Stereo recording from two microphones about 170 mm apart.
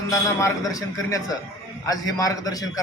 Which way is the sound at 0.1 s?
20° left (ahead or behind).